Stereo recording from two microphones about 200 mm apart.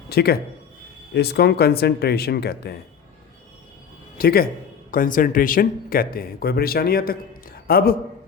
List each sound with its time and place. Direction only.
0.1 s speech: 50° left (ahead or behind)
4.2 s speech: 50° left (ahead or behind)